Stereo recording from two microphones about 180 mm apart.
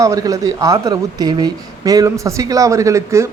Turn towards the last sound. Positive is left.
turn(degrees=-15)  # may be behind; listen again after turning